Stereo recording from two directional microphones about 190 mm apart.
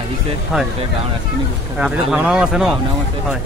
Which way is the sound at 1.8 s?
5° right (ahead or behind).